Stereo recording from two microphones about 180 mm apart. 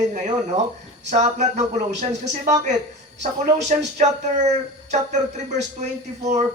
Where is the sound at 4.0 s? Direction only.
40° right (ahead or behind).